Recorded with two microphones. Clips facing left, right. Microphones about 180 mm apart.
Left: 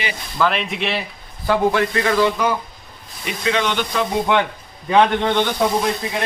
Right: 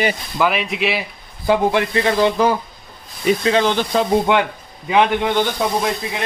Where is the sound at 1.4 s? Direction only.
20° right (ahead or behind).